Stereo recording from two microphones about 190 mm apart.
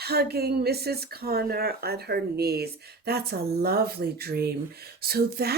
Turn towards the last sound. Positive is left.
turn(degrees=-55)  # may be behind; listen again after turning